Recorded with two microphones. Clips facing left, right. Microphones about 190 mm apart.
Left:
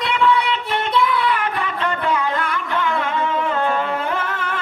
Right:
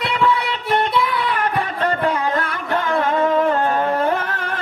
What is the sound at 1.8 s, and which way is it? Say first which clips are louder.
Music: right 1 dB; 40° right (ahead or behind).